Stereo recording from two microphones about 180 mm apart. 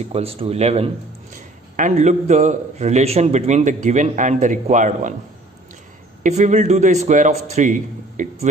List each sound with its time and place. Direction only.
0.0 s a man's voice: 35° right (ahead or behind)
6.2 s a man's voice: 40° right (ahead or behind)